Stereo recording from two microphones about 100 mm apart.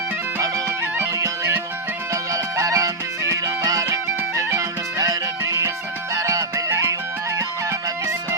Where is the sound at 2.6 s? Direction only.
35° right (ahead or behind).